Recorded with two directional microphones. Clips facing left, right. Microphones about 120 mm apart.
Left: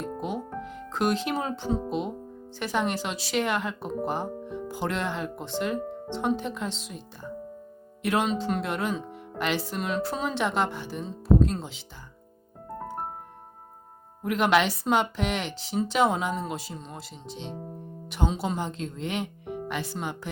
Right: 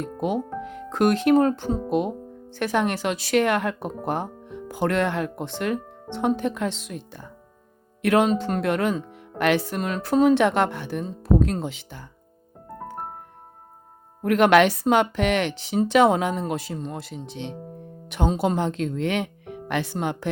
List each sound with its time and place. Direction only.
0.2 s speech: 60° right (ahead or behind)
14.2 s speech: 60° right (ahead or behind)